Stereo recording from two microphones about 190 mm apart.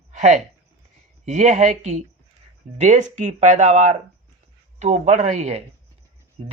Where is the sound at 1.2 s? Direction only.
35° right (ahead or behind).